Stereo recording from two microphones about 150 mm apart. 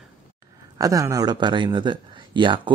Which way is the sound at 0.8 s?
20° right (ahead or behind).